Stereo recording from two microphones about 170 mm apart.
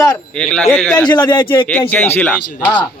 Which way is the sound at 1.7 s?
10° left (ahead or behind).